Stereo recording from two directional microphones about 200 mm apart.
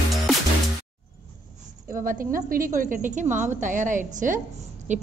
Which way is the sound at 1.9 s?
40° right (ahead or behind).